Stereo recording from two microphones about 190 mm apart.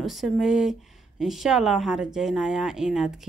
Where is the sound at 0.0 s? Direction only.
Centre (ahead or behind).